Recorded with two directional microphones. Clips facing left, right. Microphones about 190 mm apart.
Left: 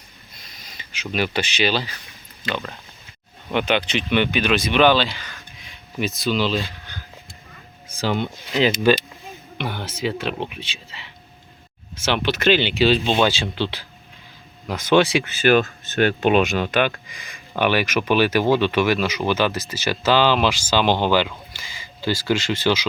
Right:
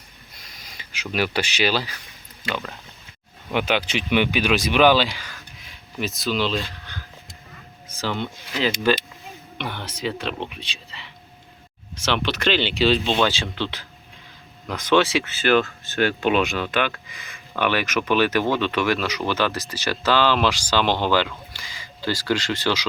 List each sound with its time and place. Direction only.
0.3 s wheeze: 10° right (ahead or behind)
1.1 s speech: 10° right (ahead or behind)
7.9 s speech: 15° left (ahead or behind)
12.0 s speech: 5° left (ahead or behind)
14.7 s speech: 10° left (ahead or behind)
19.3 s speech: 20° left (ahead or behind)